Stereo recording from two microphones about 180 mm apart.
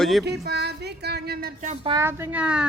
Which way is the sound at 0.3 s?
65° right (ahead or behind).